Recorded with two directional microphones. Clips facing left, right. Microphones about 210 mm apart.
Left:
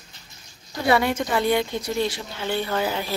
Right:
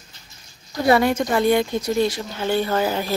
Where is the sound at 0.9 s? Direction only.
45° right (ahead or behind).